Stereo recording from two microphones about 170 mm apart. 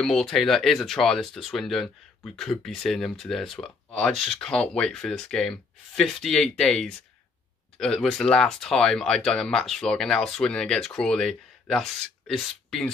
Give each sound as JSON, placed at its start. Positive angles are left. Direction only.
{"t": 0.0, "sound": "speech", "side_deg": 5}